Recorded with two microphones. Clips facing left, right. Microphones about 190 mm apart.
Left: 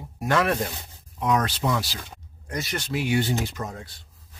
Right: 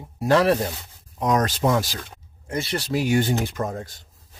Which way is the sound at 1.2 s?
45° right (ahead or behind).